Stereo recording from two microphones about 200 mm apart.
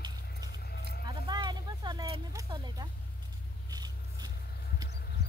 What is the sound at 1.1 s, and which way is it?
Vehicle, 20° right (ahead or behind).